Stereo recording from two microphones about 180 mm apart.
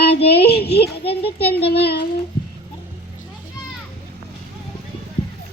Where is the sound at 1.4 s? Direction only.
60° left (ahead or behind).